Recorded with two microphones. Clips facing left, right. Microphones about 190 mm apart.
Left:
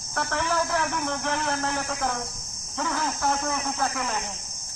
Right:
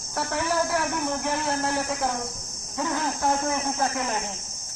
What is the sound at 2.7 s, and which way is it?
Speech, 15° right (ahead or behind).